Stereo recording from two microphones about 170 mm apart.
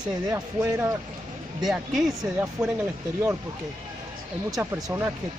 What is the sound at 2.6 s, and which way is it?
Speech, 15° right (ahead or behind).